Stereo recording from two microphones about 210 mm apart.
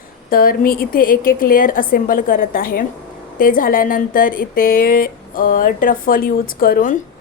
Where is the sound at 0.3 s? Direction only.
45° left (ahead or behind).